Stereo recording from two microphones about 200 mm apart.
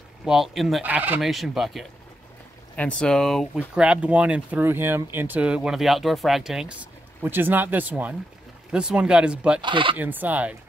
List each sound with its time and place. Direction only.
0.2 s speech: centre (ahead or behind)
3.0 s speech: 5° left (ahead or behind)
9.6 s speech: 25° right (ahead or behind)
9.9 s speech: 10° right (ahead or behind)